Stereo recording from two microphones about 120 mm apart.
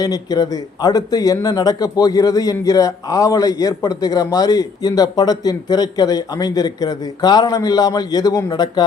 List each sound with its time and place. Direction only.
0.0 s speech: 35° left (ahead or behind)